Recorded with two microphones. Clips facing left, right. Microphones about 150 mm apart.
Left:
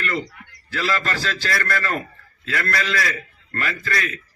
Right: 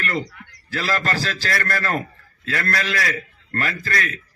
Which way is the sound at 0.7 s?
40° right (ahead or behind).